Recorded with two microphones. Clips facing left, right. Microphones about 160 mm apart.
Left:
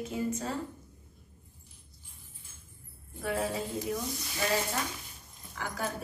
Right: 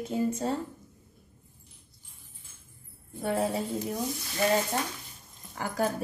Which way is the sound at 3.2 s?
30° right (ahead or behind).